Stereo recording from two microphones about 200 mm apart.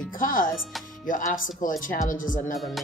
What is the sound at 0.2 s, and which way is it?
Speech, 45° left (ahead or behind).